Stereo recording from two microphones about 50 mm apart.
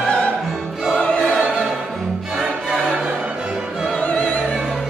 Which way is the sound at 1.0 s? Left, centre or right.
Left.